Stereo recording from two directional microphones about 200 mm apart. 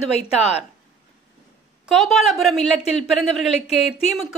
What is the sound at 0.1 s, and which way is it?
Speech, 35° left (ahead or behind).